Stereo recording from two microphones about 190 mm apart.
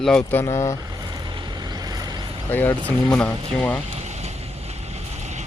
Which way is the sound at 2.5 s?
10° left (ahead or behind).